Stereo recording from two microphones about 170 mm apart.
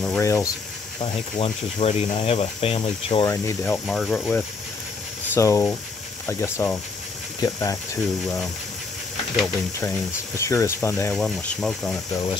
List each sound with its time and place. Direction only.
0.2 s speech: 20° left (ahead or behind)
0.9 s speech: 30° left (ahead or behind)
3.3 s speech: 15° left (ahead or behind)
3.8 s speech: centre (ahead or behind)
5.3 s speech: 15° left (ahead or behind)
9.8 s speech: 15° left (ahead or behind)
11.1 s speech: 5° left (ahead or behind)